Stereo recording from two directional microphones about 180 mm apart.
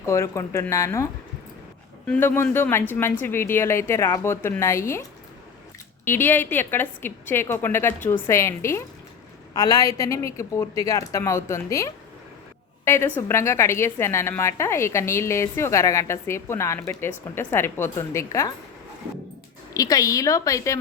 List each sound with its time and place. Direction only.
0.0 s a woman's voice: 15° left (ahead or behind)
2.0 s a woman's voice: 10° left (ahead or behind)
6.1 s a woman's voice: 10° left (ahead or behind)
19.7 s a woman's voice: 20° left (ahead or behind)